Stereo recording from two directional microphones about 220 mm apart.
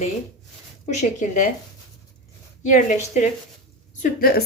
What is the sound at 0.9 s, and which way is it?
Speech, 35° left (ahead or behind).